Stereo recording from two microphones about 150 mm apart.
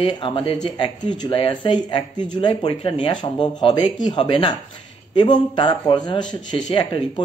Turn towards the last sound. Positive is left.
turn(degrees=35)  # may be behind; listen again after turning